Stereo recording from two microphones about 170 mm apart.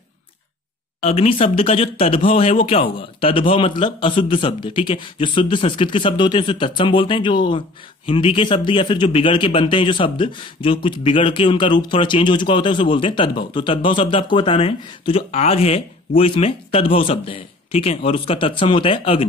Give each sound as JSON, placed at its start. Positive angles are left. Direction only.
{"t": 1.0, "sound": "a man's voice", "side_deg": 40}